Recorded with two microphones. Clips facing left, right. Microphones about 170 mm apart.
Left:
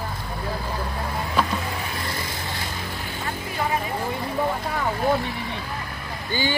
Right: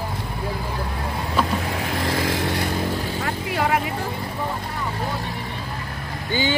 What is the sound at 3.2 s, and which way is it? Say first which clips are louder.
Vehicle: right 2 dB; 75° right (ahead or behind).